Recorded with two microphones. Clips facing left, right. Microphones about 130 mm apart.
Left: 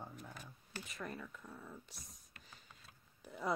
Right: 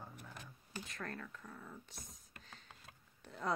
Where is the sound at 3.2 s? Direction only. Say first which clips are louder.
Even; 5° left (ahead or behind).